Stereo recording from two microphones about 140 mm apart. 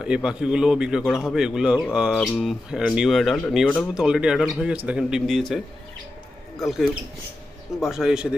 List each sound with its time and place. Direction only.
0.0 s a man's voice: 5° right (ahead or behind)
3.9 s a man's voice: 5° right (ahead or behind)
7.8 s a man's voice: 5° right (ahead or behind)